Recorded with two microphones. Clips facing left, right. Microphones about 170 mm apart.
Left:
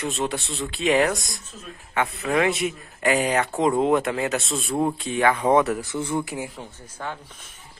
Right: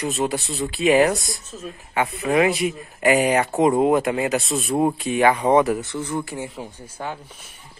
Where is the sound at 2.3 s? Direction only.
Centre (ahead or behind).